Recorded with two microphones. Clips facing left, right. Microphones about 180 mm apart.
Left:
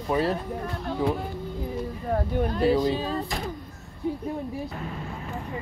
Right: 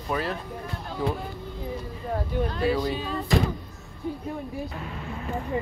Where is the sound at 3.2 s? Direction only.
80° right.